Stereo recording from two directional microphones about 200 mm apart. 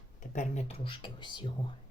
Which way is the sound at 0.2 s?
35° left (ahead or behind).